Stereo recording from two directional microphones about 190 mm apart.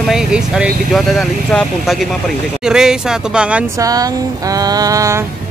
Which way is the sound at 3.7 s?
20° right (ahead or behind).